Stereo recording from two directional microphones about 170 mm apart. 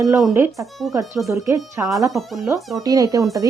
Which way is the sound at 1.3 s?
15° right (ahead or behind).